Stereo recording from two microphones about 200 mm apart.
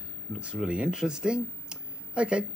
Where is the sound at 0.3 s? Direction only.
5° right (ahead or behind).